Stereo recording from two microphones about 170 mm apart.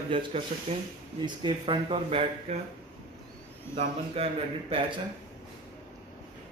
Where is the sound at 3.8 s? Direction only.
35° right (ahead or behind).